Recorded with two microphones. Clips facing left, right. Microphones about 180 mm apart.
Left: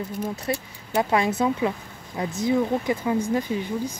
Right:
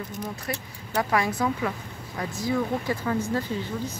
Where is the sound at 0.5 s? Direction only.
25° left (ahead or behind).